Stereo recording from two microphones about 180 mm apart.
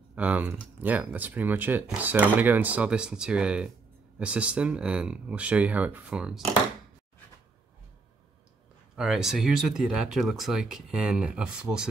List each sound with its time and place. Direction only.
0.1 s speech: 10° right (ahead or behind)
8.9 s speech: 5° right (ahead or behind)